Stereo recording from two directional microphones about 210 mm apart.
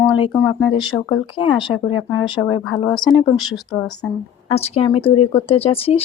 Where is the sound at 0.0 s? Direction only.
20° left (ahead or behind).